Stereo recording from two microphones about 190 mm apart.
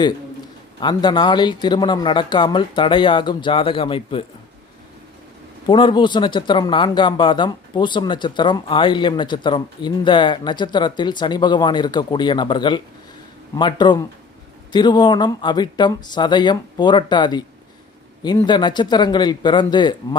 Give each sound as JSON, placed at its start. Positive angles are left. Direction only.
{"t": 0.8, "sound": "speech", "side_deg": 25}
{"t": 5.6, "sound": "speech", "side_deg": 25}